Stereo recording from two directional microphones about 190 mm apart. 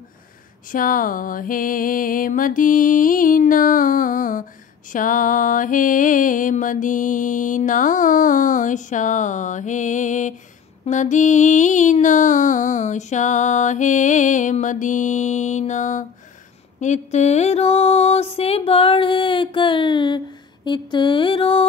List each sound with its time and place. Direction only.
0.7 s music: 45° left (ahead or behind); by 20.2 s 25° left (ahead or behind)
20.6 s mantra: 25° left (ahead or behind)